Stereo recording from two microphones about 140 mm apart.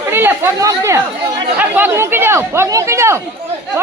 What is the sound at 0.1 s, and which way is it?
Chatter, 15° right (ahead or behind).